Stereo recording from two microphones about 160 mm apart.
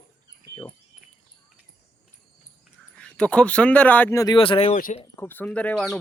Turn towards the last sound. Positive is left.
turn(degrees=5)  # may be behind; listen again after turning